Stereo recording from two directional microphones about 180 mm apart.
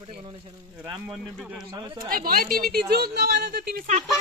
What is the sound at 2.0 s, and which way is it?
Speech, 55° right (ahead or behind).